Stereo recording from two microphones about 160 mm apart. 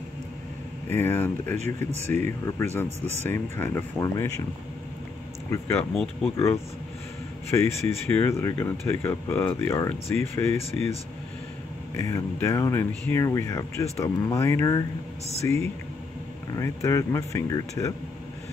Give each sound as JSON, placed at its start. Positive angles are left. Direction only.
{"t": 0.9, "sound": "speech", "side_deg": 15}
{"t": 5.5, "sound": "speech", "side_deg": 15}
{"t": 12.0, "sound": "speech", "side_deg": 15}
{"t": 16.5, "sound": "speech", "side_deg": 20}